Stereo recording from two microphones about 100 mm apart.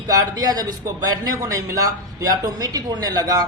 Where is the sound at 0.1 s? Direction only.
40° right (ahead or behind).